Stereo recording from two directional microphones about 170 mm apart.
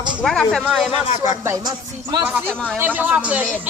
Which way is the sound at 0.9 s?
45° left (ahead or behind).